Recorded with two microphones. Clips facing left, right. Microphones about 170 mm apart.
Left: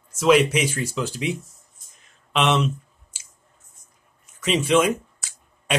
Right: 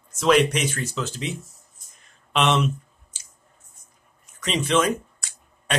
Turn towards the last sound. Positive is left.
turn(degrees=5)  # may be behind; listen again after turning